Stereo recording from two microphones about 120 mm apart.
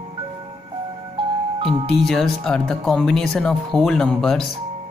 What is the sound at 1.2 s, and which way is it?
Music, 50° right (ahead or behind).